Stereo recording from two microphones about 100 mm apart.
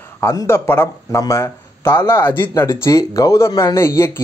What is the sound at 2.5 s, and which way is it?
A man's voice, 30° left (ahead or behind).